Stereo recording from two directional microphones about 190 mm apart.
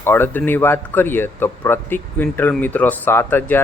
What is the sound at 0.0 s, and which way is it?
Speech, 10° left (ahead or behind).